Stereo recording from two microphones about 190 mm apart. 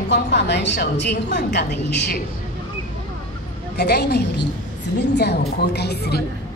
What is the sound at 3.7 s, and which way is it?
A woman's voice, 60° left (ahead or behind).